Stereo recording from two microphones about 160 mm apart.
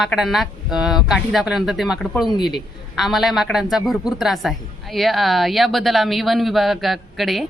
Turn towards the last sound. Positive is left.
turn(degrees=0)  # may be behind; listen again after turning